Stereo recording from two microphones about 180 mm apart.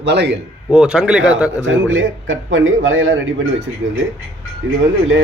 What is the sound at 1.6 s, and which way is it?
A man's voice, 90° right.